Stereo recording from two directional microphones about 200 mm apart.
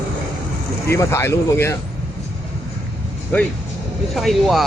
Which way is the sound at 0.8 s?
15° left (ahead or behind).